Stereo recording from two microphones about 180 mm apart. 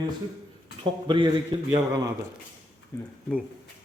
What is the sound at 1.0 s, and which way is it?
A man's voice, 25° right (ahead or behind).